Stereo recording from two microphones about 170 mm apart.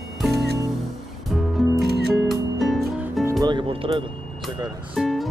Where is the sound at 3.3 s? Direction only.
25° right (ahead or behind).